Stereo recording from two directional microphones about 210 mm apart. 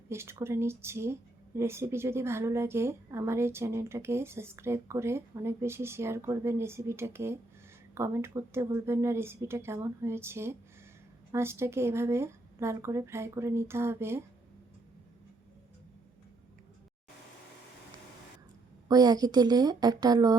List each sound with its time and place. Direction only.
0.1 s a woman's voice: 10° right (ahead or behind)
18.9 s a woman's voice: 20° right (ahead or behind)